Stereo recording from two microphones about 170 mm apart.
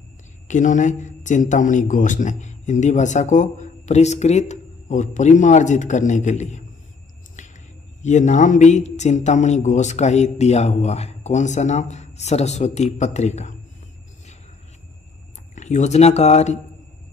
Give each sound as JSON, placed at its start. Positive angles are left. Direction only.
{"t": 0.5, "sound": "a man's voice", "side_deg": 45}
{"t": 8.0, "sound": "a man's voice", "side_deg": 45}
{"t": 15.5, "sound": "speech", "side_deg": 45}